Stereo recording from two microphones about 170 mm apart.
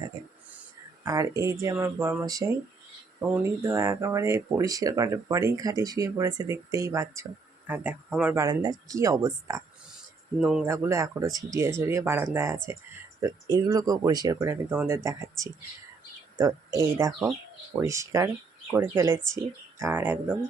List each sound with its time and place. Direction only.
1.0 s speech: 20° right (ahead or behind)
8.4 s speech: 20° right (ahead or behind)
10.4 s speech: 5° right (ahead or behind)
10.7 s speech: 15° right (ahead or behind)